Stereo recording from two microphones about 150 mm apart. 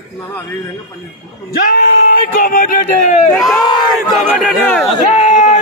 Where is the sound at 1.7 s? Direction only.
70° left (ahead or behind); by 3.3 s 55° left (ahead or behind).